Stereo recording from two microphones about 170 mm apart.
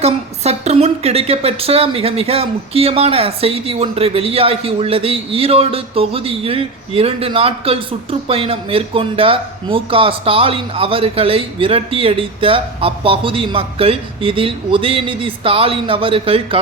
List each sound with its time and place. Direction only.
0.0 s a woman's voice: 40° right (ahead or behind)